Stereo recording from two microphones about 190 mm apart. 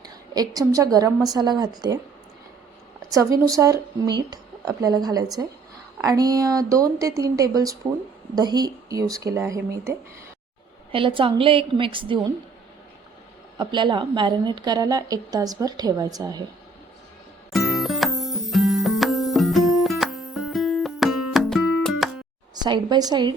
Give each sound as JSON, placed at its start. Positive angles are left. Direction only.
{"t": 0.0, "sound": "a woman's voice", "side_deg": -20}
{"t": 3.1, "sound": "a woman's voice", "side_deg": -15}
{"t": 10.9, "sound": "a woman's voice", "side_deg": -25}
{"t": 13.6, "sound": "a woman's voice", "side_deg": -25}
{"t": 17.5, "sound": "music", "side_deg": 0}
{"t": 22.5, "sound": "a woman's voice", "side_deg": -20}